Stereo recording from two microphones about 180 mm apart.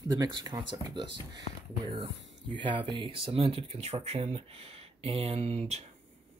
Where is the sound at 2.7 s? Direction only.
30° right (ahead or behind).